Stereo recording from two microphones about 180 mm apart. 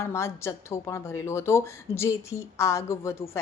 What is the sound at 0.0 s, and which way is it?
A woman's voice, 15° left (ahead or behind).